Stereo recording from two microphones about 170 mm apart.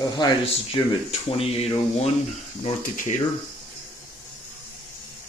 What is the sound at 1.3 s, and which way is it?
Speech, 35° left (ahead or behind).